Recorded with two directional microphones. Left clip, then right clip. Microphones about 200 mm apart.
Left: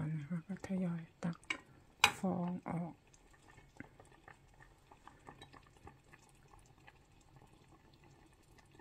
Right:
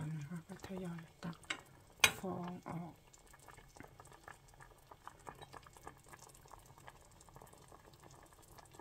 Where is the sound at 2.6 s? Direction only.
10° left (ahead or behind).